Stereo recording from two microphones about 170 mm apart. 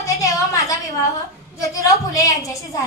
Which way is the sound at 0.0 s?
20° left (ahead or behind).